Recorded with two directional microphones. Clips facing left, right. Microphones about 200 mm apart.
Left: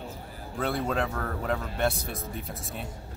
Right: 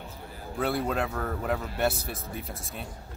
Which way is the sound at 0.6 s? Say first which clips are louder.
Even; 5° right (ahead or behind).